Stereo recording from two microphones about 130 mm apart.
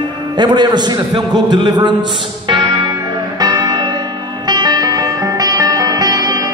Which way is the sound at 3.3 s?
30° right (ahead or behind).